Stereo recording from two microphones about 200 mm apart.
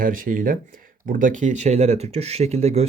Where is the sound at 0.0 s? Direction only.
45° right (ahead or behind).